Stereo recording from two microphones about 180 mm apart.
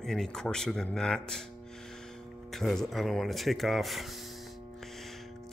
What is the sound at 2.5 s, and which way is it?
Speech, centre (ahead or behind).